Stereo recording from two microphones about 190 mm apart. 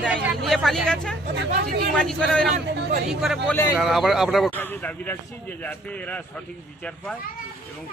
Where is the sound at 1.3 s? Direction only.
55° right (ahead or behind).